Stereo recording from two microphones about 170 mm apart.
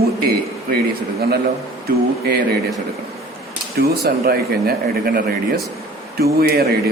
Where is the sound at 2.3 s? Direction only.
65° right (ahead or behind).